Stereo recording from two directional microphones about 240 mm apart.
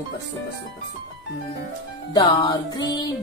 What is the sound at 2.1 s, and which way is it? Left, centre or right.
Music, centre.